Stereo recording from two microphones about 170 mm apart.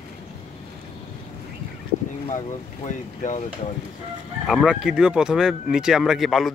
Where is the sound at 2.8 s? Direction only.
45° left (ahead or behind).